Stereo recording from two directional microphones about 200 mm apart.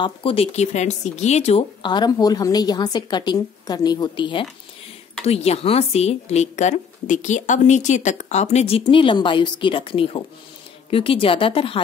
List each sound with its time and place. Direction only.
0.0 s a woman's voice: 25° left (ahead or behind)